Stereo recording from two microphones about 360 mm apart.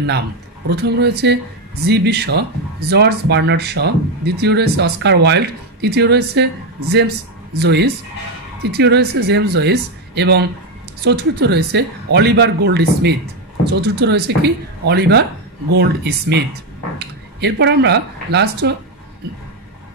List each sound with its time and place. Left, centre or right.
0.7 s speech: right